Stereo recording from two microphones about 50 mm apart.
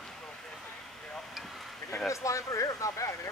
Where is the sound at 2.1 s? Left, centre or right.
Left.